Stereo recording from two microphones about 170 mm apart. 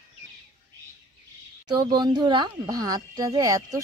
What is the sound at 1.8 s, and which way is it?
Speech, 25° right (ahead or behind).